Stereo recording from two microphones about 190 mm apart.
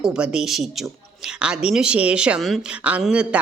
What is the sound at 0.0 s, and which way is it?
A woman's voice, 5° right (ahead or behind).